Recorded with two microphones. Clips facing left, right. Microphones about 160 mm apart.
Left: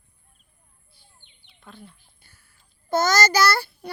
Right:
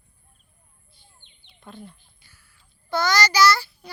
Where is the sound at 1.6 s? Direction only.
Centre (ahead or behind).